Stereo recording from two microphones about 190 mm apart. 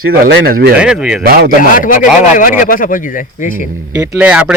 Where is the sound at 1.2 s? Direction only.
50° right (ahead or behind).